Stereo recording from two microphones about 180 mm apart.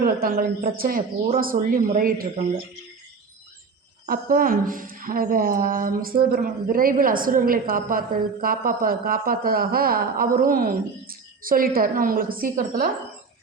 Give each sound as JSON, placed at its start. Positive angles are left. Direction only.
{"t": 0.0, "sound": "speech", "side_deg": -55}
{"t": 4.0, "sound": "speech", "side_deg": -50}